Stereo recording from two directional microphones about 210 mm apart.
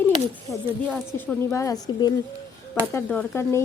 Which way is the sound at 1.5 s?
15° left (ahead or behind).